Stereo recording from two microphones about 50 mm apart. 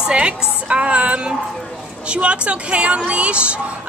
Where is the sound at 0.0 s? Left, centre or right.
Right.